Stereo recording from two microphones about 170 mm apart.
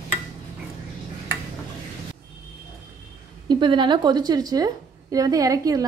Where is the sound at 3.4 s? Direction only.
25° right (ahead or behind).